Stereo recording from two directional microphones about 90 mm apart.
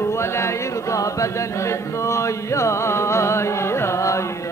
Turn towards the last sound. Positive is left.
turn(degrees=35)  # may be behind; listen again after turning